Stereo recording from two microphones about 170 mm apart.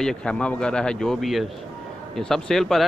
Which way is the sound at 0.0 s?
5° left (ahead or behind).